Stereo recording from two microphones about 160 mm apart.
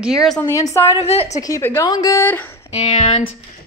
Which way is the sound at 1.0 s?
40° left (ahead or behind).